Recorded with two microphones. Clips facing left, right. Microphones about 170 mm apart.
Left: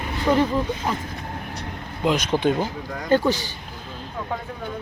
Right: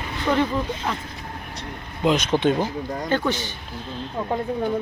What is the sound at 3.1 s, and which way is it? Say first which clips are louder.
Speech: left 5 dB; 35° left (ahead or behind).